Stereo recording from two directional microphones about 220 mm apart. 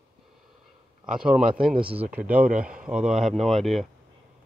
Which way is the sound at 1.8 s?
25° right (ahead or behind).